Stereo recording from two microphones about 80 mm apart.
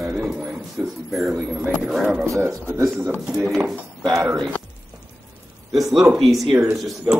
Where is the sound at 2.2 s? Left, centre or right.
Right.